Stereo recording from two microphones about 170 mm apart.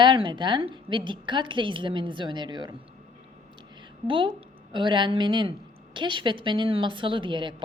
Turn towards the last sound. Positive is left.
turn(degrees=-30)  # may be behind; listen again after turning